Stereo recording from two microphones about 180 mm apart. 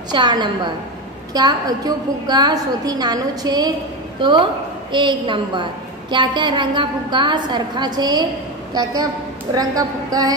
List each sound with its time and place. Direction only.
0.1 s a woman's voice: 25° right (ahead or behind)
9.5 s a woman's voice: 20° right (ahead or behind)